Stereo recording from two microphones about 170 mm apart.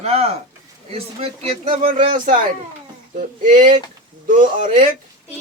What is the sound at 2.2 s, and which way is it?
Speech, 55° right (ahead or behind).